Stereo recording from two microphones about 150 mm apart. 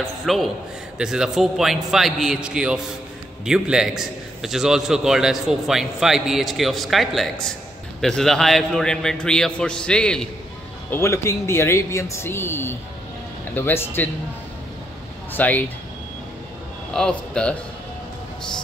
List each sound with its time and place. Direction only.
0.0 s a man's voice: centre (ahead or behind)
10.9 s speech: 15° left (ahead or behind)
15.3 s speech: 10° left (ahead or behind)
16.9 s a man's voice: 5° left (ahead or behind)